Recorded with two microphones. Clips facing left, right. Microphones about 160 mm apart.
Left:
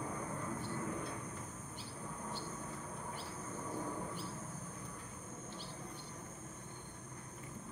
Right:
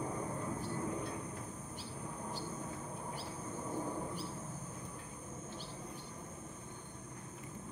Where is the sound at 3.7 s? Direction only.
10° right (ahead or behind).